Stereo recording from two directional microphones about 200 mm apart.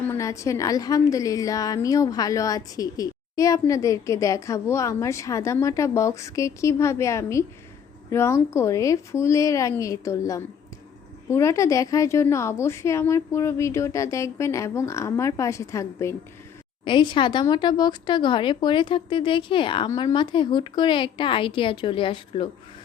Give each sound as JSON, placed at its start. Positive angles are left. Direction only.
{"t": 0.1, "sound": "a woman's voice", "side_deg": 15}